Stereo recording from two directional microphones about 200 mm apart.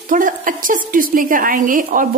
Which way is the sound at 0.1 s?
40° right (ahead or behind).